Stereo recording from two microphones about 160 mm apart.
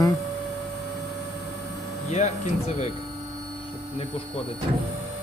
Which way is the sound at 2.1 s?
45° left (ahead or behind).